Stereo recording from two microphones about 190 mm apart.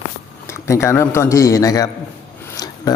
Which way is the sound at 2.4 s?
20° left (ahead or behind).